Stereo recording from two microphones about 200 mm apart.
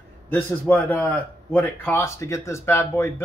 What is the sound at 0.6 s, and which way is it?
A man's voice, 10° left (ahead or behind).